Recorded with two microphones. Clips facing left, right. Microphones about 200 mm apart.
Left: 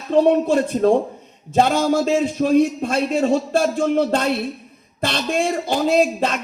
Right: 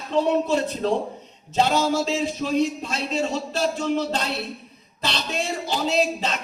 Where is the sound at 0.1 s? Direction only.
50° left (ahead or behind).